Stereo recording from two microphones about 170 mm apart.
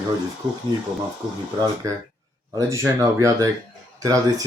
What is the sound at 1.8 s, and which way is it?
Speech, 20° right (ahead or behind).